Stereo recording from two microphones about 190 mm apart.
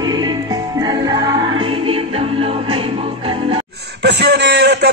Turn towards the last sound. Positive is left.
turn(degrees=-60)  # may be behind; listen again after turning